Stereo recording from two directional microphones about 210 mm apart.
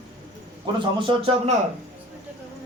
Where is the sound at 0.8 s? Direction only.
25° right (ahead or behind).